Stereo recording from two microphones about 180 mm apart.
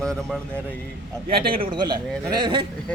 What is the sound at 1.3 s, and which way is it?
Speech, 55° right (ahead or behind).